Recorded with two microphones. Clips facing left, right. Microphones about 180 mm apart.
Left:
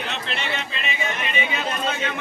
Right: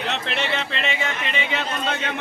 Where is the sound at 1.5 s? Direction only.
70° right (ahead or behind).